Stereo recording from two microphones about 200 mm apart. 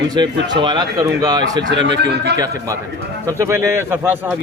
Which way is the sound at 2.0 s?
55° right (ahead or behind).